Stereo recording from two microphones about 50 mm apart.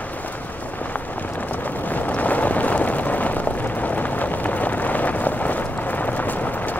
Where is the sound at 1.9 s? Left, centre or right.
Left.